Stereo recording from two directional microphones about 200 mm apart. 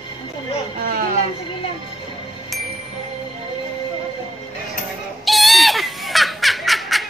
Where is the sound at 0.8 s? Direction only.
45° right (ahead or behind).